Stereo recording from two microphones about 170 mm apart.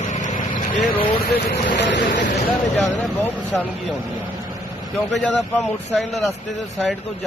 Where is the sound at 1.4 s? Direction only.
80° left.